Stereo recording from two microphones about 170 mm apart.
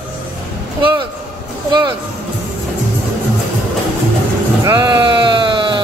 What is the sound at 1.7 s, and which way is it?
Speech, 25° right (ahead or behind).